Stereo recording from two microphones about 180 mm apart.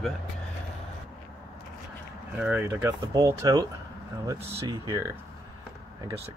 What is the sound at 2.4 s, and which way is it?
Speech, 10° right (ahead or behind).